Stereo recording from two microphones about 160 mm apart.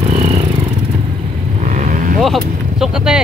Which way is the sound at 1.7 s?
55° right (ahead or behind).